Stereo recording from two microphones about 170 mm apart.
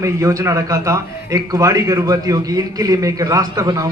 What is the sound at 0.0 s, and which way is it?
A man's voice, 20° right (ahead or behind).